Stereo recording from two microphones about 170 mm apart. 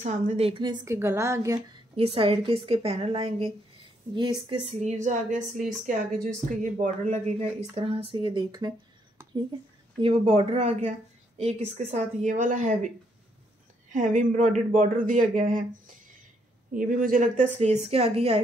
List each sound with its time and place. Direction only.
0.0 s a woman's voice: 40° right (ahead or behind); by 1.6 s 20° right (ahead or behind)
2.0 s a woman's voice: 35° right (ahead or behind)
4.9 s speech: 45° right (ahead or behind)
6.5 s speech: 50° right (ahead or behind); by 8.7 s 25° right (ahead or behind)
10.0 s speech: 35° right (ahead or behind)
13.9 s speech: 50° right (ahead or behind)
16.7 s speech: 50° right (ahead or behind); by 18.4 s 35° right (ahead or behind)